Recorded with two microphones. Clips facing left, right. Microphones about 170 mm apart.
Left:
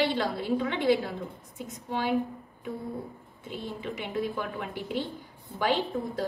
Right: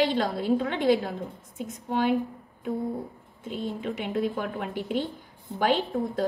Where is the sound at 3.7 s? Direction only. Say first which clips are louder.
Right 2 dB; 50° right (ahead or behind).